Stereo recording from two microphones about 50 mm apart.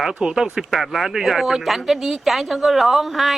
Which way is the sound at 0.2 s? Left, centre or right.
Centre.